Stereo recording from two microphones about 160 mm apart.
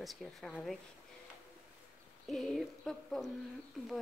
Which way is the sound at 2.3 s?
Centre (ahead or behind).